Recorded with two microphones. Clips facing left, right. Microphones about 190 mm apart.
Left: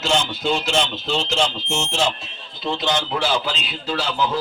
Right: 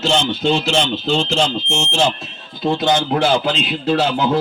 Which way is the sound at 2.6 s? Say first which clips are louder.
Right 6 dB; 50° right (ahead or behind).